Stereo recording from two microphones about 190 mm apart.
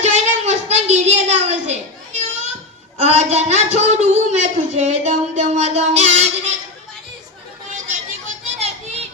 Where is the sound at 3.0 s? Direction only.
35° right (ahead or behind).